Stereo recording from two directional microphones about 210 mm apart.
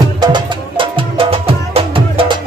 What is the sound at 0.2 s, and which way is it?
Music, 20° right (ahead or behind).